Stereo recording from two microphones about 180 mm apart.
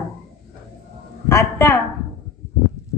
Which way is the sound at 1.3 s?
15° left (ahead or behind).